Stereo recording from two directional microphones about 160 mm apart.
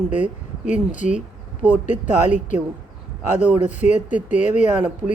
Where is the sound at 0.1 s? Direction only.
50° left (ahead or behind).